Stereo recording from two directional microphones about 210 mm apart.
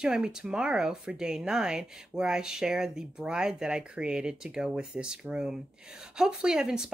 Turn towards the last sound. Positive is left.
turn(degrees=-5)  # may be behind; listen again after turning